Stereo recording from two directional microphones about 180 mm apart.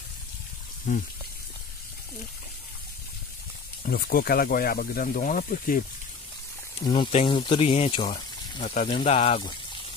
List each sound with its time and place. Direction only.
0.9 s speech: 45° left (ahead or behind)
3.8 s speech: 55° left (ahead or behind)
6.8 s speech: 25° left (ahead or behind)
8.6 s speech: 45° left (ahead or behind)